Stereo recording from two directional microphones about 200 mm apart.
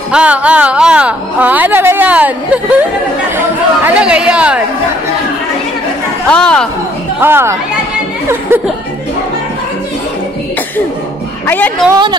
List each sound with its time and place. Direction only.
0.1 s speech: 5° right (ahead or behind)
6.3 s speech: 5° left (ahead or behind)
7.2 s speech: 10° right (ahead or behind)
11.4 s a woman's voice: 10° left (ahead or behind)
11.9 s a woman's voice: 20° right (ahead or behind)